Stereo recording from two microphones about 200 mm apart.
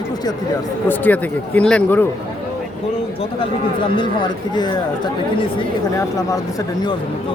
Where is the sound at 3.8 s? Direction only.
25° left (ahead or behind).